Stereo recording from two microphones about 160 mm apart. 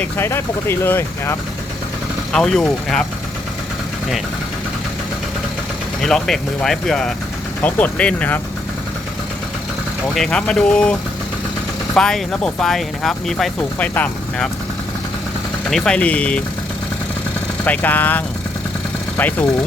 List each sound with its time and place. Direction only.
0.0 s speech: 15° left (ahead or behind)
2.3 s speech: 5° left (ahead or behind)
6.0 s speech: 5° left (ahead or behind)
10.2 s speech: 5° left (ahead or behind)
11.9 s speech: 5° left (ahead or behind)
15.7 s speech: 5° left (ahead or behind)
17.7 s speech: 10° left (ahead or behind)